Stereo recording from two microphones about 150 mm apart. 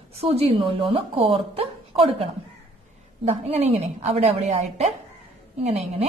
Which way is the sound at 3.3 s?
45° right (ahead or behind).